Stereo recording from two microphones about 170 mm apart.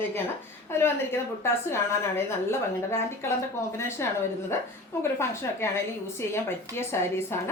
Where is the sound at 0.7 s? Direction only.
15° left (ahead or behind).